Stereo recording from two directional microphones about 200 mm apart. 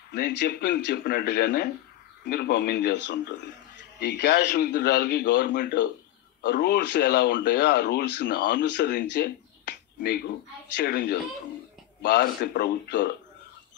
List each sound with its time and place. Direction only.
0.1 s a man's voice: 55° left (ahead or behind)
5.5 s speech: 60° left (ahead or behind)